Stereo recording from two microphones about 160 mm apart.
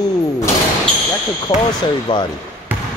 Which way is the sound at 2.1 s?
30° left (ahead or behind).